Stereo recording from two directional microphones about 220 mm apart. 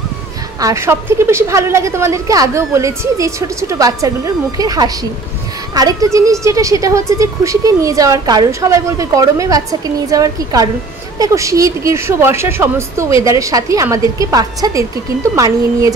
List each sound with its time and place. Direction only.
0.6 s a woman's voice: 15° right (ahead or behind)